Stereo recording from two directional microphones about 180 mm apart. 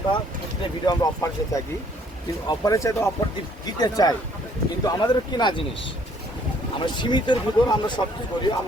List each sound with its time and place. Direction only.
0.6 s speech: 20° left (ahead or behind)
6.7 s speech: 25° left (ahead or behind)